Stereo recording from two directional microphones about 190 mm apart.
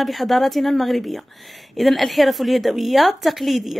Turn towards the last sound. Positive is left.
turn(degrees=0)  # may be behind; listen again after turning